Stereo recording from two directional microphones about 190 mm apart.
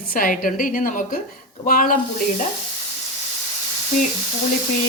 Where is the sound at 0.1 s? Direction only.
45° left (ahead or behind).